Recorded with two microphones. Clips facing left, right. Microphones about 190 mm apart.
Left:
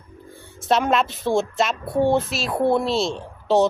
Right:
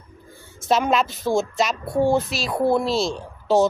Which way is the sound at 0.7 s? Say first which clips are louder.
Even; centre (ahead or behind).